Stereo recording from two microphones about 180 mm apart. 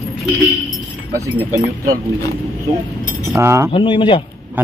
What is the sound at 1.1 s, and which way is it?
Speech, 15° right (ahead or behind).